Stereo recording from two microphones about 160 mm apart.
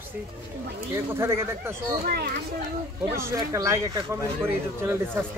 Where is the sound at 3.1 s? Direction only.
15° right (ahead or behind).